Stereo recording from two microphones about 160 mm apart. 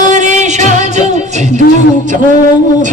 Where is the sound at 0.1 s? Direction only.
45° right (ahead or behind).